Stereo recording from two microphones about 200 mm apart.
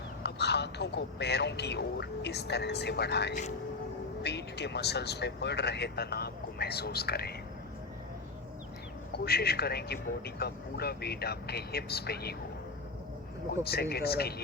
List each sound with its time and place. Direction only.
0.2 s speech: 55° left (ahead or behind)
9.1 s speech: 50° left (ahead or behind)
13.7 s speech: 50° left (ahead or behind)